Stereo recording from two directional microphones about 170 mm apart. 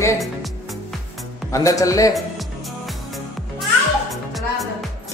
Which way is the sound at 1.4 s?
20° left (ahead or behind).